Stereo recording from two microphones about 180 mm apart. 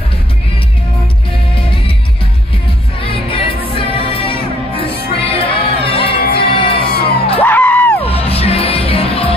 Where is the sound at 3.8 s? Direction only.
30° left (ahead or behind).